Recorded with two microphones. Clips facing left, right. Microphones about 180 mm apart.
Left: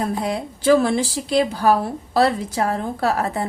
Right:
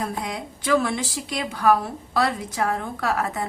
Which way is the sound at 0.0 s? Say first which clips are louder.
Left 6 dB; 35° left (ahead or behind).